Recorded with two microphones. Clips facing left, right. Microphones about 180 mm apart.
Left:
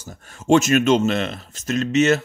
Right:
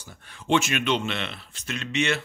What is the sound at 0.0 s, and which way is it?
Speech, 45° left (ahead or behind).